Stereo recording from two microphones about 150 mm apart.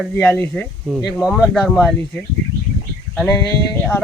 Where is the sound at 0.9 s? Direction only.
5° right (ahead or behind).